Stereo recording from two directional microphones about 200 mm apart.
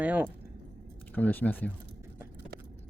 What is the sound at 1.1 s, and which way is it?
Speech, 10° left (ahead or behind).